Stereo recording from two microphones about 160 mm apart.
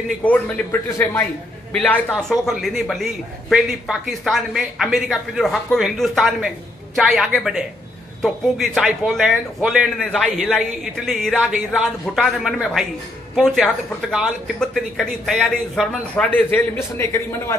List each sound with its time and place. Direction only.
0.2 s a man's voice: 10° left (ahead or behind)
14.1 s a man's voice: centre (ahead or behind)